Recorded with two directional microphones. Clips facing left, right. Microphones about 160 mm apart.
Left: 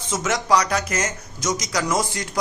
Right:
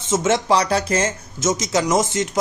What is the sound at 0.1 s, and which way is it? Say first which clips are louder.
Speech: right 3 dB; 25° right (ahead or behind).